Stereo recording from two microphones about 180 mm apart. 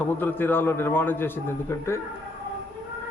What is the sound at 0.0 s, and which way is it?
A man's voice, 10° left (ahead or behind).